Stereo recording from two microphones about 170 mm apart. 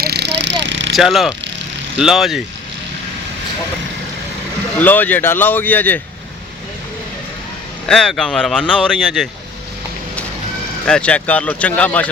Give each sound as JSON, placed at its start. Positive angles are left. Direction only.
{"t": 0.0, "sound": "a sound", "side_deg": -75}
{"t": 0.9, "sound": "speech", "side_deg": 0}
{"t": 4.8, "sound": "speech", "side_deg": 10}
{"t": 7.9, "sound": "speech", "side_deg": 5}
{"t": 10.8, "sound": "speech", "side_deg": 5}